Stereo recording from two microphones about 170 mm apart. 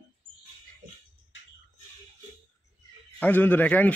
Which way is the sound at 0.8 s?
55° right (ahead or behind).